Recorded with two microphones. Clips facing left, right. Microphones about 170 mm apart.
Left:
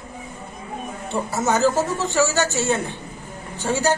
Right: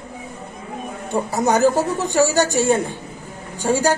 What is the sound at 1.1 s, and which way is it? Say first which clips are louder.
A man's voice: right 3 dB; 15° right (ahead or behind).